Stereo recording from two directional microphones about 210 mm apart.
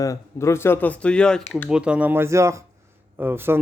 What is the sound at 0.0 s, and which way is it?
Speech, 15° left (ahead or behind).